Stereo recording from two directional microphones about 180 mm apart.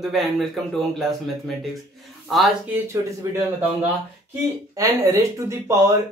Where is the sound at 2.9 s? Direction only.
15° right (ahead or behind).